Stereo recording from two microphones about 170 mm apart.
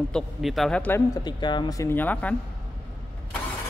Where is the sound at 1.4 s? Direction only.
25° left (ahead or behind).